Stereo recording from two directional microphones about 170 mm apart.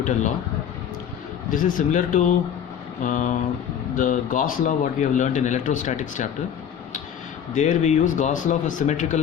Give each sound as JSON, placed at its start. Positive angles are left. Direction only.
{"t": 0.0, "sound": "speech", "side_deg": 45}
{"t": 1.5, "sound": "speech", "side_deg": 50}
{"t": 7.5, "sound": "speech", "side_deg": 45}